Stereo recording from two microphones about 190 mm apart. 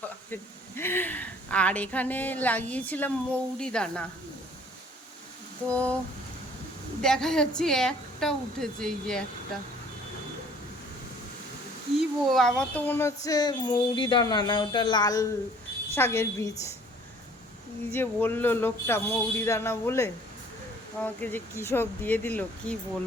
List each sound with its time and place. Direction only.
0.8 s a woman's voice: 10° left (ahead or behind)
5.6 s a woman's voice: 5° left (ahead or behind)
7.0 s a woman's voice: 5° left (ahead or behind)
11.9 s a woman's voice: centre (ahead or behind)
17.9 s a woman's voice: 10° left (ahead or behind)